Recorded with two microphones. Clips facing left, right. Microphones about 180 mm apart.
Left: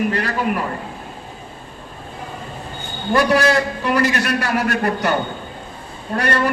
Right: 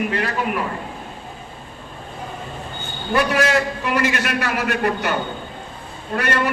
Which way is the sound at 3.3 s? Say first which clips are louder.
Left 2 dB; 35° left (ahead or behind).